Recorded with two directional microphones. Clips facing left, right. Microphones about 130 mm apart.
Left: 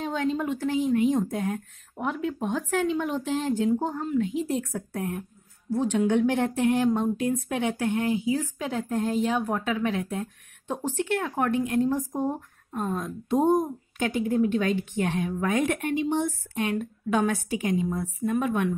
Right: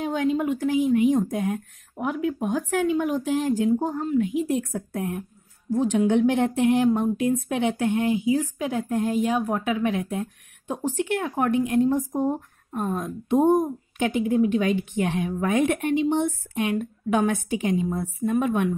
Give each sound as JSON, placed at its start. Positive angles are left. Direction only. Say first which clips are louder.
{"t": 0.0, "sound": "speech", "louder": "right 3 dB", "side_deg": -15}